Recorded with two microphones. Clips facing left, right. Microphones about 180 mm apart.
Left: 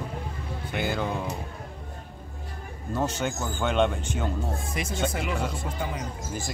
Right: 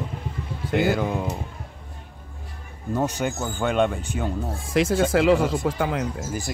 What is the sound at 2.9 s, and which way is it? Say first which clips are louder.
Speech: right 3 dB; 15° right (ahead or behind).